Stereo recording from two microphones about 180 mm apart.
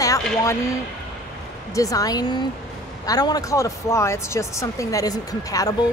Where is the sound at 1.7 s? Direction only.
20° left (ahead or behind).